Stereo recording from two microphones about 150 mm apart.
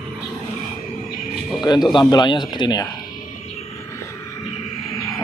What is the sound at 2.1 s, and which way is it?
Speech, 30° left (ahead or behind).